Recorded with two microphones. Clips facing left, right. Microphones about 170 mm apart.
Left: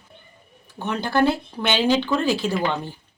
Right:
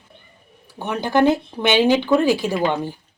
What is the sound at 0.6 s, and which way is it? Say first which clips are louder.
Speech: right 2 dB; 15° right (ahead or behind).